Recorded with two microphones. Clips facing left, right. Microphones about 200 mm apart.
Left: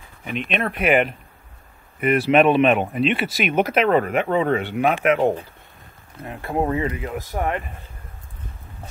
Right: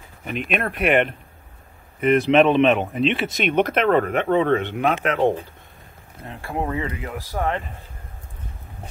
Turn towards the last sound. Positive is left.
turn(degrees=15)  # may be behind; listen again after turning